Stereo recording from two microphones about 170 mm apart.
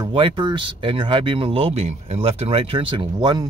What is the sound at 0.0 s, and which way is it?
Speech, 30° right (ahead or behind).